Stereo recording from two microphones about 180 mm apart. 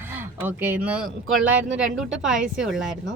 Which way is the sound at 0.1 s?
10° right (ahead or behind).